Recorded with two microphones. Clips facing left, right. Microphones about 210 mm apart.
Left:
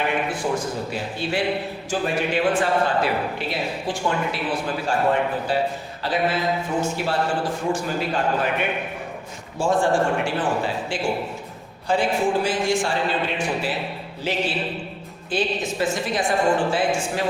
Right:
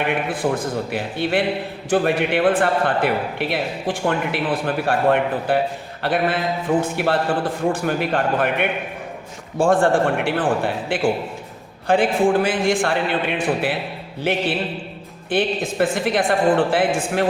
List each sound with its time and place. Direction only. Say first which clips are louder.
0.3 s a man's voice: right 3 dB; 55° right (ahead or behind)